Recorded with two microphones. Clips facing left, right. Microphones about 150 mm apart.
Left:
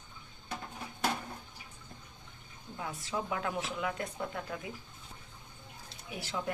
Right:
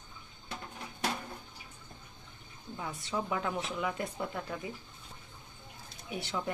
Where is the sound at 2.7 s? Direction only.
5° left (ahead or behind).